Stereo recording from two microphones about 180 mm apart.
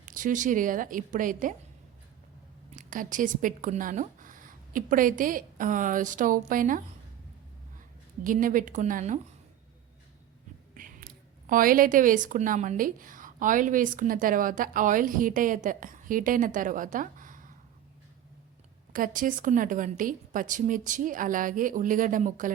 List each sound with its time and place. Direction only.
0.0 s a woman's voice: 45° right (ahead or behind)
2.7 s speech: 45° right (ahead or behind)
8.2 s a woman's voice: 50° right (ahead or behind)
10.8 s a woman's voice: 50° right (ahead or behind)
18.9 s a woman's voice: 50° right (ahead or behind)